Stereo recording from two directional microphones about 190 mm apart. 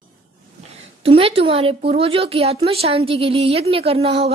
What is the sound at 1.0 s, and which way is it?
Speech, 30° right (ahead or behind).